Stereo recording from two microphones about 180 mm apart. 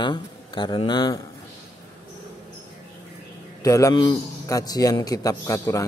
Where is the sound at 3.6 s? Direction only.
15° left (ahead or behind).